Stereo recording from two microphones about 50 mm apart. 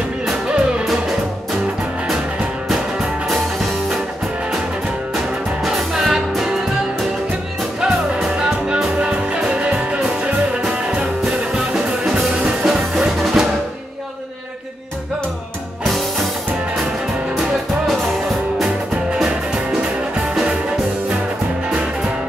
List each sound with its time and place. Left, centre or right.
0.3 s music: centre
2.7 s music: centre
5.1 s music: centre
7.8 s music: centre
17.4 s music: centre
19.1 s music: centre